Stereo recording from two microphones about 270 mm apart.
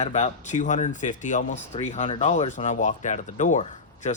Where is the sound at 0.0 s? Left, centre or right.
Left.